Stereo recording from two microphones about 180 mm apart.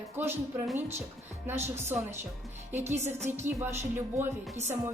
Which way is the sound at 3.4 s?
10° right (ahead or behind).